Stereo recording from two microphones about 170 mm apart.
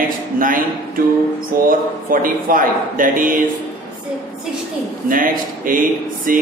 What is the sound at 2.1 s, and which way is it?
A man's voice, 55° right (ahead or behind).